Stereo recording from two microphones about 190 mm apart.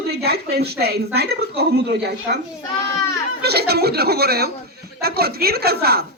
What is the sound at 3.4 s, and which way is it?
A woman's voice, 55° right (ahead or behind).